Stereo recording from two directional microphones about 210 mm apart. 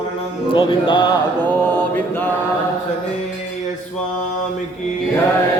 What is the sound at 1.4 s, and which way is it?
Mantra, 10° left (ahead or behind).